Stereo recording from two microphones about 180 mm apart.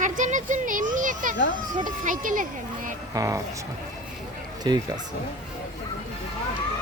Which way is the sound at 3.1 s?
20° right (ahead or behind).